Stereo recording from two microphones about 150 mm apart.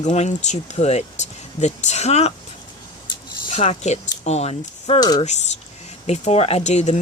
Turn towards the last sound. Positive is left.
turn(degrees=50)  # may be behind; listen again after turning